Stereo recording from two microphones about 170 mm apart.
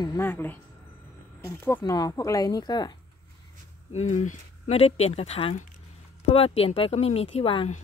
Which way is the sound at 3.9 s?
45° left (ahead or behind).